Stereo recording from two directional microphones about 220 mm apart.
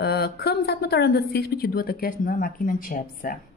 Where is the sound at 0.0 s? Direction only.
45° left (ahead or behind).